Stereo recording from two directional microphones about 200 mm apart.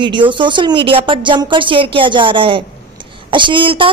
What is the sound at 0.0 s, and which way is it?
A woman's voice, 25° right (ahead or behind).